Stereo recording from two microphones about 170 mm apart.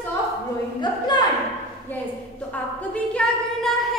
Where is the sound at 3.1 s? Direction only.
Centre (ahead or behind).